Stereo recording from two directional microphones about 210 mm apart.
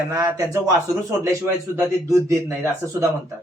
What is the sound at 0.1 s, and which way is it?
Speech, 15° right (ahead or behind).